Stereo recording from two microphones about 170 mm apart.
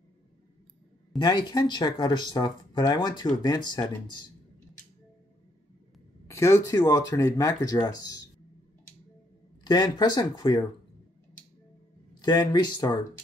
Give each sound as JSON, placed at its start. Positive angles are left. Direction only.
{"t": 1.1, "sound": "speech", "side_deg": 25}
{"t": 6.2, "sound": "speech", "side_deg": 15}
{"t": 9.7, "sound": "speech", "side_deg": 25}
{"t": 12.1, "sound": "speech", "side_deg": 25}